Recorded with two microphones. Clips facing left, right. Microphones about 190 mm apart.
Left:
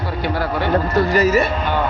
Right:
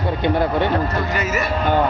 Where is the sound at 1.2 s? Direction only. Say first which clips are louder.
Left 10 dB; 35° left (ahead or behind).